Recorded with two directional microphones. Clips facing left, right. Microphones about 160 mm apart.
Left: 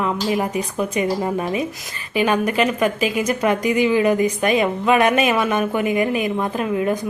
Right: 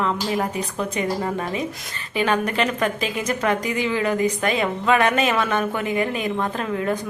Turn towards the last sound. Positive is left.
turn(degrees=10)  # may be behind; listen again after turning